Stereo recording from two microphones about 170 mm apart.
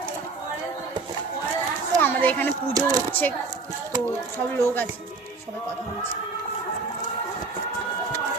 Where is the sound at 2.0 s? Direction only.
10° left (ahead or behind).